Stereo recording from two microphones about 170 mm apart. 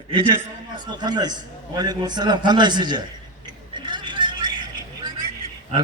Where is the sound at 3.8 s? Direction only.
25° right (ahead or behind).